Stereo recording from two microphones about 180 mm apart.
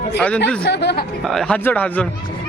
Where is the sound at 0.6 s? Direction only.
65° left (ahead or behind).